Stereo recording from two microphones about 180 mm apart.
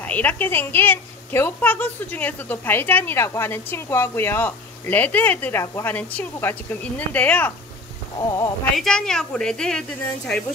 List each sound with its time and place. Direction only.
0.0 s a woman's voice: 10° left (ahead or behind)
8.7 s a woman's voice: 5° left (ahead or behind)